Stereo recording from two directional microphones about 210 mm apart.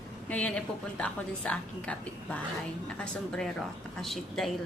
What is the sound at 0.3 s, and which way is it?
A woman's voice, 5° left (ahead or behind).